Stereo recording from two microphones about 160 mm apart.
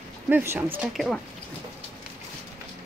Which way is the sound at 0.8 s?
Centre (ahead or behind).